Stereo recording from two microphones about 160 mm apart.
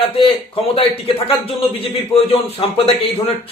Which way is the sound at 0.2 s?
35° left (ahead or behind).